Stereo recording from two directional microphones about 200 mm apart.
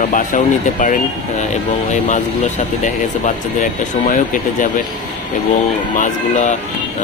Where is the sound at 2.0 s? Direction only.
35° left (ahead or behind).